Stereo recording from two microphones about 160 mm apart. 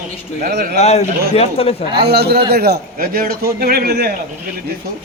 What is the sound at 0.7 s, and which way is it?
Speech, 45° left (ahead or behind).